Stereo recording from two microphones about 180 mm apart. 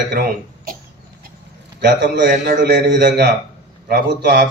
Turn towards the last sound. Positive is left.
turn(degrees=-70)  # may be behind; listen again after turning